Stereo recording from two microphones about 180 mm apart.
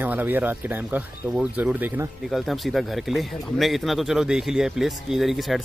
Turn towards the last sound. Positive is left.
turn(degrees=0)  # may be behind; listen again after turning